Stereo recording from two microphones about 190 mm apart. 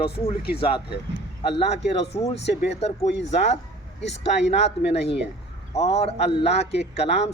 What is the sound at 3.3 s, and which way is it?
Speech, 35° left (ahead or behind).